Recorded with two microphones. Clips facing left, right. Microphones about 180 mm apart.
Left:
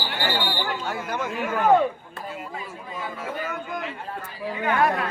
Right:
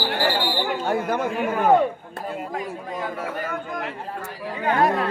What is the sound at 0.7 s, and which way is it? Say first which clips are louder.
Speech: right 6 dB; 50° right (ahead or behind).